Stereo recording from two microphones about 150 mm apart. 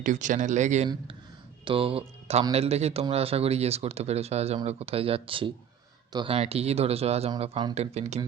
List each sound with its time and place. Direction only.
0.0 s speech: 55° right (ahead or behind)
1.6 s a man's voice: 40° right (ahead or behind)